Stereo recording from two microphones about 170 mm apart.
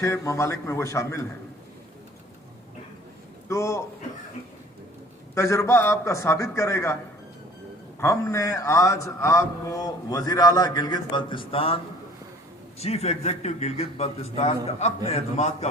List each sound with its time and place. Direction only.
0.0 s a man's voice: 20° left (ahead or behind)
3.5 s a man's voice: 15° left (ahead or behind)
5.3 s a man's voice: 15° left (ahead or behind)
7.9 s a man's voice: 15° left (ahead or behind); by 11.8 s 35° left (ahead or behind)
12.8 s a man's voice: 40° left (ahead or behind)